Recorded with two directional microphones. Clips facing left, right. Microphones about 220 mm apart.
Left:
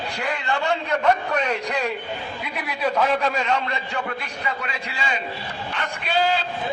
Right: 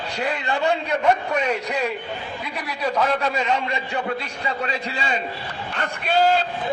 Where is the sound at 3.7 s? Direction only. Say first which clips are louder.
Right 3 dB; 25° right (ahead or behind).